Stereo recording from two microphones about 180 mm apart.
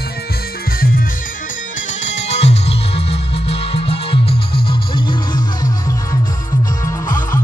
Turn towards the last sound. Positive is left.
turn(degrees=20)  # may be behind; listen again after turning